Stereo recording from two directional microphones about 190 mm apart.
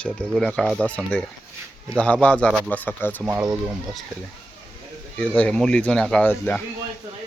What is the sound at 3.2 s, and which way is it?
Speech, 20° right (ahead or behind).